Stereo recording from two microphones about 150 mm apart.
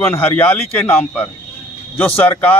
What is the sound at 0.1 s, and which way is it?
A man's voice, 10° left (ahead or behind).